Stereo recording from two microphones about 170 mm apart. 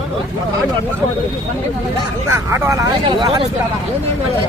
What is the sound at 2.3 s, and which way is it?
Speech, 15° right (ahead or behind).